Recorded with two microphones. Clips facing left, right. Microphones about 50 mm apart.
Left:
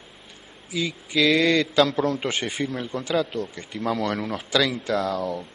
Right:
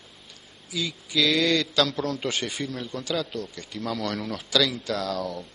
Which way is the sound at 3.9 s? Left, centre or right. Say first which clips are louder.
Left 2 dB; centre.